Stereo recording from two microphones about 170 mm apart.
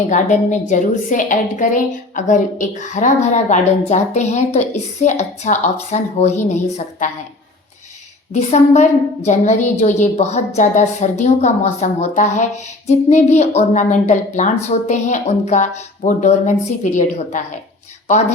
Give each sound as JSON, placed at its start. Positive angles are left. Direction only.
{"t": 0.1, "sound": "a woman's voice", "side_deg": 45}
{"t": 8.3, "sound": "a woman's voice", "side_deg": 40}